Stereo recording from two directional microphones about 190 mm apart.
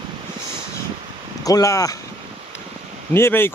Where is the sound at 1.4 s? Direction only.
20° left (ahead or behind).